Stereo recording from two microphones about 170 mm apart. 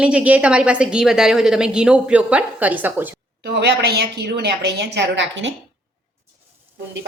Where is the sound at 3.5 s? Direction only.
75° right (ahead or behind).